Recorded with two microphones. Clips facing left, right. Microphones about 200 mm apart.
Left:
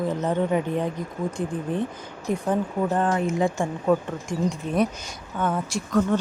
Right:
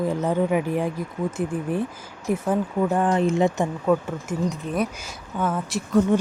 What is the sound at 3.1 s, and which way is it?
Speech, 25° right (ahead or behind).